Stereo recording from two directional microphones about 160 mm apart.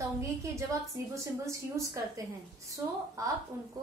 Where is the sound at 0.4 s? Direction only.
20° right (ahead or behind).